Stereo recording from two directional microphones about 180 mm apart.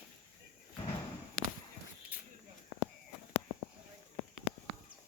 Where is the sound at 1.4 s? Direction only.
90° left.